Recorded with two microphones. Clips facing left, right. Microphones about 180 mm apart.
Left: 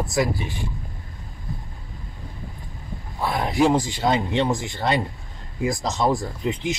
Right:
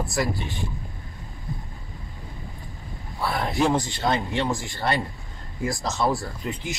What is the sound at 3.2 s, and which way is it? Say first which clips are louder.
Speech: left 3 dB; 15° left (ahead or behind).